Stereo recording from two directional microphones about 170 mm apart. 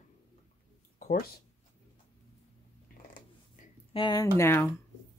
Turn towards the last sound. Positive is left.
turn(degrees=15)  # may be behind; listen again after turning